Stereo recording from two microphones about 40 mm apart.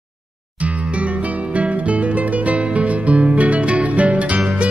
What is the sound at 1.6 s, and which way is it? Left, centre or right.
Music, right.